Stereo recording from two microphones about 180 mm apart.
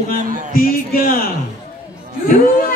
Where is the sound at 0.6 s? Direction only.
55° left (ahead or behind).